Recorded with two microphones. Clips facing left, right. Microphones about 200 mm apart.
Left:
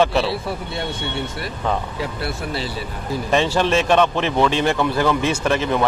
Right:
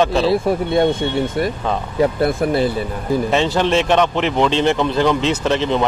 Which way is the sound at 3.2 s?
15° right (ahead or behind).